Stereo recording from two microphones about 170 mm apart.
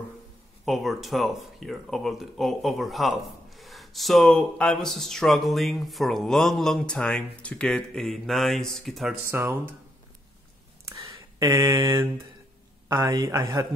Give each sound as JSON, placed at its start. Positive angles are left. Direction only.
{"t": 0.7, "sound": "speech", "side_deg": 0}
{"t": 9.3, "sound": "speech", "side_deg": -15}
{"t": 10.9, "sound": "a sound", "side_deg": -20}
{"t": 12.8, "sound": "a woman's voice", "side_deg": -20}